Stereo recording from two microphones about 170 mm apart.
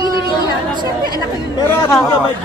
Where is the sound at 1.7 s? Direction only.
15° left (ahead or behind).